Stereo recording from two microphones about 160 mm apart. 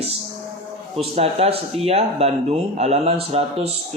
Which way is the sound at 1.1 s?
40° right (ahead or behind).